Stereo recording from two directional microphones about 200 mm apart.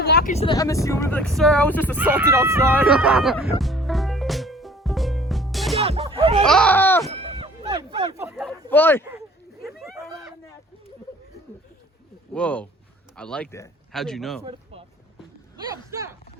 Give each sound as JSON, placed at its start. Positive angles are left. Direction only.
{"t": 0.0, "sound": "a sound", "side_deg": 50}
{"t": 0.4, "sound": "speech", "side_deg": 20}
{"t": 2.0, "sound": "a man's voice", "side_deg": -10}
{"t": 3.3, "sound": "music", "side_deg": 0}
{"t": 5.8, "sound": "music", "side_deg": -30}
{"t": 6.4, "sound": "speech", "side_deg": 5}
{"t": 7.1, "sound": "music", "side_deg": -30}
{"t": 8.1, "sound": "a sound", "side_deg": -15}
{"t": 8.7, "sound": "speech", "side_deg": 10}
{"t": 9.6, "sound": "a sound", "side_deg": 0}
{"t": 12.3, "sound": "a man's voice", "side_deg": 5}
{"t": 14.4, "sound": "a sound", "side_deg": -30}
{"t": 15.9, "sound": "speech", "side_deg": -15}